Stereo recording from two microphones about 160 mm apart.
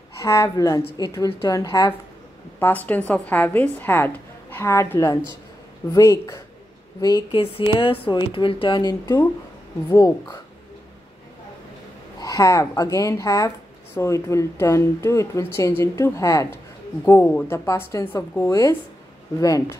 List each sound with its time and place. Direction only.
0.2 s speech: 20° left (ahead or behind)
2.6 s speech: 10° left (ahead or behind)
7.2 s speech: 35° left (ahead or behind); by 10.3 s 20° left (ahead or behind)
12.2 s speech: 20° left (ahead or behind)